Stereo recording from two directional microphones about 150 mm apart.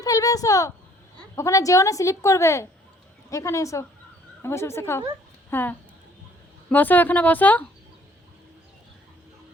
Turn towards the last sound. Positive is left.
turn(degrees=10)  # may be behind; listen again after turning